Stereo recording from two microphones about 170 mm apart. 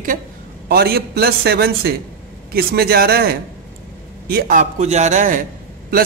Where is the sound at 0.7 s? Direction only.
65° right (ahead or behind); by 5.4 s 50° right (ahead or behind).